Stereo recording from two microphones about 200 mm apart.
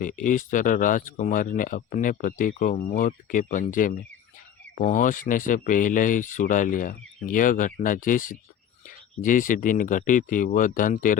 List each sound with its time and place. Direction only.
0.0 s speech: 45° left (ahead or behind)